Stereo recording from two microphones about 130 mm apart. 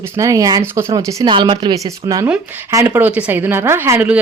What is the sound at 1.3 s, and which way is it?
Speech, 40° right (ahead or behind).